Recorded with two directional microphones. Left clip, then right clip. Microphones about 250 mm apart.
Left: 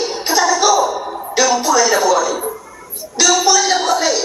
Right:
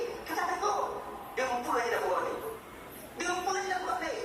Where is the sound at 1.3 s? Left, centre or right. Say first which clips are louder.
Left 17 dB; left.